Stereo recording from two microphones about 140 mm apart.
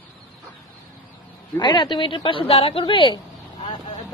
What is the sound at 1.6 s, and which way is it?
A woman's voice, 30° left (ahead or behind).